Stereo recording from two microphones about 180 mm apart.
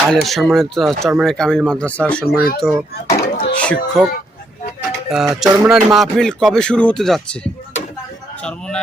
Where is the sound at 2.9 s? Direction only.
55° left (ahead or behind).